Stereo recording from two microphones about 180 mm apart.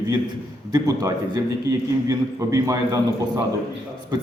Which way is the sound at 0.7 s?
20° right (ahead or behind).